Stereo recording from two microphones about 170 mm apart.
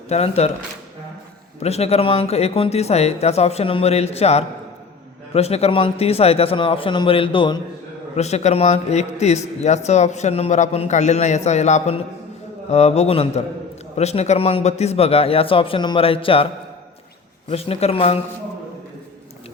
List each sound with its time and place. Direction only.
0.1 s a man's voice: 40° left (ahead or behind)
1.6 s a man's voice: 40° left (ahead or behind)
8.1 s a man's voice: 40° left (ahead or behind)
17.5 s a man's voice: 35° left (ahead or behind)